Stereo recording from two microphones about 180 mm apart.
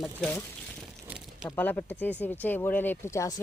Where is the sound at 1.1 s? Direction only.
5° right (ahead or behind).